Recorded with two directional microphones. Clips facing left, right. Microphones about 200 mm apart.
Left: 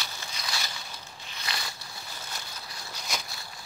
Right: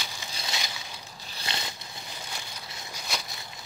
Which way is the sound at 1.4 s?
25° right (ahead or behind).